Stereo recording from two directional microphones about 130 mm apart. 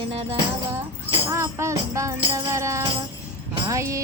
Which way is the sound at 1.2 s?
20° right (ahead or behind).